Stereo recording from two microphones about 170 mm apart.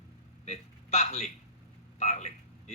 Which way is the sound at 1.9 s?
45° left (ahead or behind).